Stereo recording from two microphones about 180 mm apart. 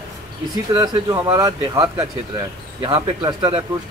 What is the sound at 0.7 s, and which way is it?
Speech, 20° right (ahead or behind).